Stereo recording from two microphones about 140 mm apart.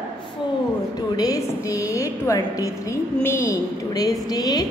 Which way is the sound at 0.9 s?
25° left (ahead or behind).